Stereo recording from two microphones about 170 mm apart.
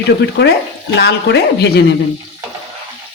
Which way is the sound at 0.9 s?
80° left.